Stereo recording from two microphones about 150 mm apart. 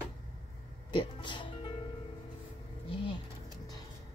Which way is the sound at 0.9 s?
30° left (ahead or behind).